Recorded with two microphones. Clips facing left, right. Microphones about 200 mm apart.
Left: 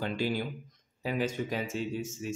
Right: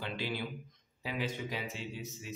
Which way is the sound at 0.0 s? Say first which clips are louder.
Left 6 dB; 45° left (ahead or behind).